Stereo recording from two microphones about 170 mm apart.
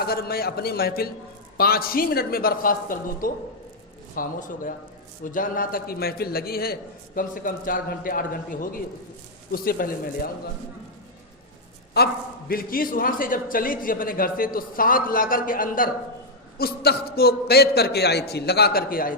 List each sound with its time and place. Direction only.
0.0 s a man's voice: 65° left (ahead or behind)
12.5 s a man's voice: 60° left (ahead or behind)
16.6 s a man's voice: 65° left (ahead or behind)